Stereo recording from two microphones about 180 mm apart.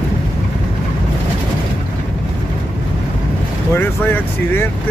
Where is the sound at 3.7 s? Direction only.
10° left (ahead or behind).